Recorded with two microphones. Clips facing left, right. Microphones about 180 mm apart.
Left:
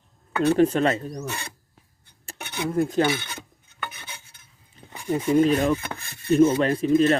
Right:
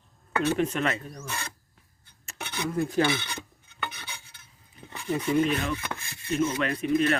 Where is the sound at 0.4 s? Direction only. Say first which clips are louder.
Left 8 dB; 35° left (ahead or behind).